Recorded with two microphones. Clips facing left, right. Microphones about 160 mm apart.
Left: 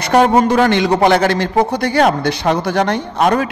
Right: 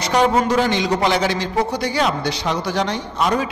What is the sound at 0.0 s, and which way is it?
A man's voice, 55° left (ahead or behind).